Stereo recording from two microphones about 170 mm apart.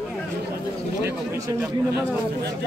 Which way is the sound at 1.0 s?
15° right (ahead or behind).